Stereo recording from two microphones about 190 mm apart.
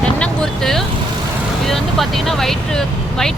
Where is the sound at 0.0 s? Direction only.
5° left (ahead or behind).